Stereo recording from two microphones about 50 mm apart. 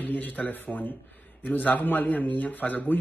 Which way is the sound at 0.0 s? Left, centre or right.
Left.